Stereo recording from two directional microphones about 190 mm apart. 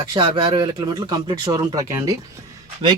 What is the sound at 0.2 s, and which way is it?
Speech, 25° right (ahead or behind).